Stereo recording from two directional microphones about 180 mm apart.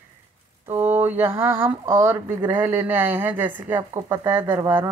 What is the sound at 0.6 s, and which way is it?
Speech, 10° right (ahead or behind).